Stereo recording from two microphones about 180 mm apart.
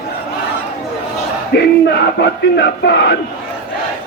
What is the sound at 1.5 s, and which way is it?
Music, 65° left (ahead or behind).